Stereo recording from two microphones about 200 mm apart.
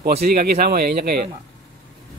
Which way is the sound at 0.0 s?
50° right (ahead or behind).